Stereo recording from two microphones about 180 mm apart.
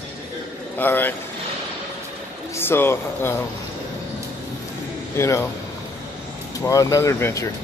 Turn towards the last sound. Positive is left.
turn(degrees=15)  # may be behind; listen again after turning